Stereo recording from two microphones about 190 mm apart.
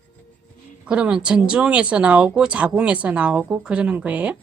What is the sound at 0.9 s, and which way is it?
Speech, 5° right (ahead or behind).